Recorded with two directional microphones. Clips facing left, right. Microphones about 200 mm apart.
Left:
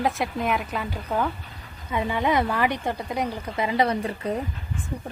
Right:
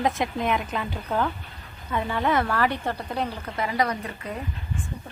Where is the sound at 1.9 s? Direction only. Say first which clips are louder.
Left 1 dB; 15° left (ahead or behind); by 4.4 s 30° left (ahead or behind).